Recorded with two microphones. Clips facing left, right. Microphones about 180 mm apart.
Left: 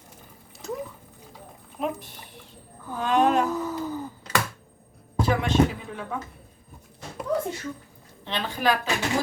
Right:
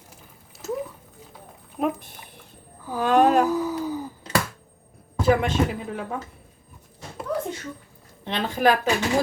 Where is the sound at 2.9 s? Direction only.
65° right (ahead or behind).